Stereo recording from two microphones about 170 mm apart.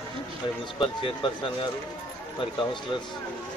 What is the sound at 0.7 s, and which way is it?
Speech, 30° left (ahead or behind).